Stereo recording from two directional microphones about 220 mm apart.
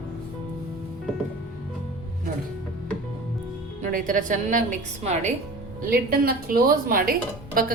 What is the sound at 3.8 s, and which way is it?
Speech, 35° right (ahead or behind).